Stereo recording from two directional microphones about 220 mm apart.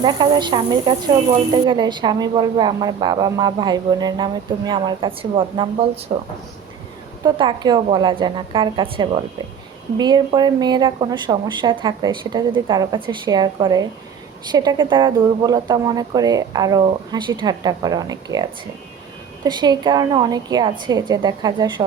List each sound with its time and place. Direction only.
0.0 s a woman's voice: 20° right (ahead or behind)
7.3 s a woman's voice: 20° right (ahead or behind)
19.5 s a woman's voice: 20° right (ahead or behind)